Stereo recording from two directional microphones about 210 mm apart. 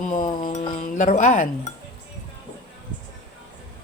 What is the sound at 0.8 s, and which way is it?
Speech, 40° left (ahead or behind).